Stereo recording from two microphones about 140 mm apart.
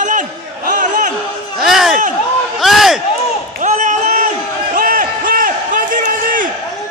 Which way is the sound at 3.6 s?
65° right (ahead or behind).